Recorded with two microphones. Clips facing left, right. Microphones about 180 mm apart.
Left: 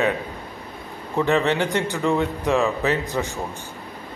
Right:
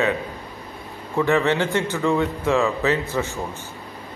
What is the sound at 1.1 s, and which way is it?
A man's voice, 20° left (ahead or behind).